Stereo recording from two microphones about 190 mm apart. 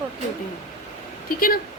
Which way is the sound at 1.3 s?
50° left (ahead or behind).